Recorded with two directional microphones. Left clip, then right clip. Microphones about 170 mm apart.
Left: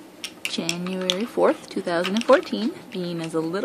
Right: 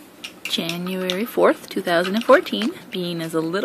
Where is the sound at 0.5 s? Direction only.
Centre (ahead or behind).